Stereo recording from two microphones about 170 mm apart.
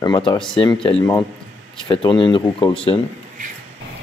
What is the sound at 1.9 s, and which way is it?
Speech, 30° left (ahead or behind).